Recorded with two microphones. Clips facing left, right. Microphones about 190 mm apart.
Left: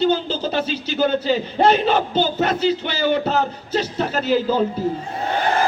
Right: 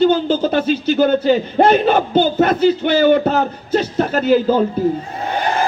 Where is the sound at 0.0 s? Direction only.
55° right (ahead or behind).